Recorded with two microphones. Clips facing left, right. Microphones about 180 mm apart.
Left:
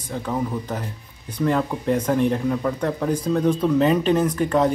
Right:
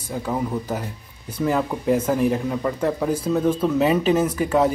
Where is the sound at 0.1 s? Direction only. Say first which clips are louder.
Right 1 dB; 10° right (ahead or behind).